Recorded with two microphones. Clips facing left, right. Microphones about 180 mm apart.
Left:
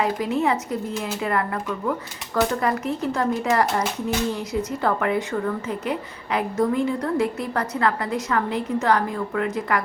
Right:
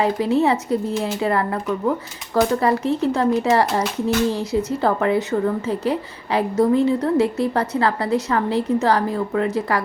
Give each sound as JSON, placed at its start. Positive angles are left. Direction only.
{"t": 0.0, "sound": "speech", "side_deg": -30}